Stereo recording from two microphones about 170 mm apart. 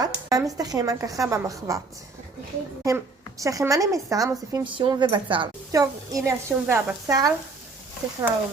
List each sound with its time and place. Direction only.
0.0 s speech: 20° right (ahead or behind)
2.8 s a woman's voice: 20° right (ahead or behind)
4.6 s a woman's voice: 30° right (ahead or behind)